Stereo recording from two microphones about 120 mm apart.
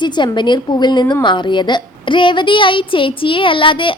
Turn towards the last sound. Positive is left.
turn(degrees=45)  # may be behind; listen again after turning